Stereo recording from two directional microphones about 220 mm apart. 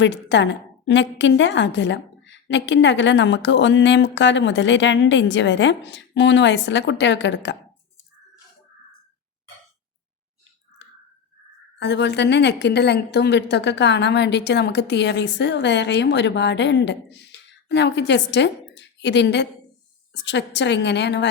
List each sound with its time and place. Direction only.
0.0 s a woman's voice: 55° left (ahead or behind)
11.8 s a woman's voice: 50° left (ahead or behind)